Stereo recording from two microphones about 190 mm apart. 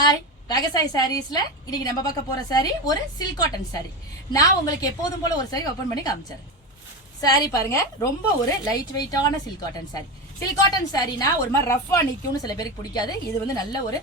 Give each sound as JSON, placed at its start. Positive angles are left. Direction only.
{"t": 0.0, "sound": "a woman's voice", "side_deg": 20}
{"t": 7.2, "sound": "a woman's voice", "side_deg": 20}
{"t": 10.4, "sound": "a woman's voice", "side_deg": 20}